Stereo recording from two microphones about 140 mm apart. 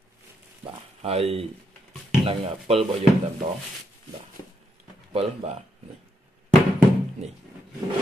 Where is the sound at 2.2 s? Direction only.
45° right (ahead or behind).